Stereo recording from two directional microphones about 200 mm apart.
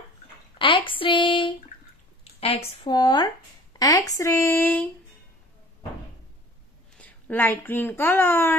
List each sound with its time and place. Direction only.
0.6 s a sound: 25° left (ahead or behind)
2.4 s speech: 30° left (ahead or behind); by 4.8 s 10° left (ahead or behind)
7.0 s a woman's voice: 10° left (ahead or behind)